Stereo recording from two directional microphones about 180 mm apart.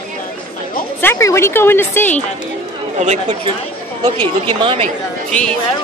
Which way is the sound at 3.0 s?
40° right (ahead or behind).